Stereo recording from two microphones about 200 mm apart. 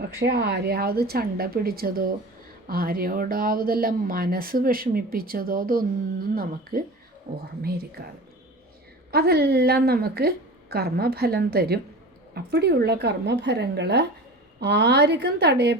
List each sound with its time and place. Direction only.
0.2 s speech: 55° right (ahead or behind)
9.1 s speech: 50° right (ahead or behind)